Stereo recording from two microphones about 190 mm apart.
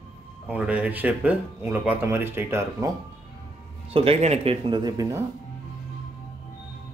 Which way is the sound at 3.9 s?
30° right (ahead or behind).